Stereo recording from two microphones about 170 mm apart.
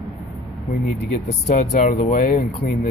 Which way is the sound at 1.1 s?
50° left (ahead or behind).